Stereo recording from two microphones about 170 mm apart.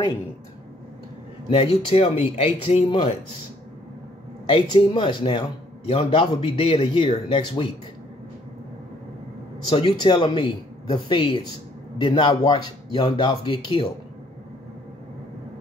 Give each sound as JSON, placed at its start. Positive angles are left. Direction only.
{"t": 1.5, "sound": "speech", "side_deg": 35}
{"t": 4.5, "sound": "speech", "side_deg": 30}
{"t": 9.7, "sound": "speech", "side_deg": 35}